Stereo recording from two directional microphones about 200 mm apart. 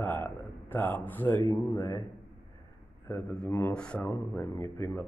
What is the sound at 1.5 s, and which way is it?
Speech, 15° left (ahead or behind).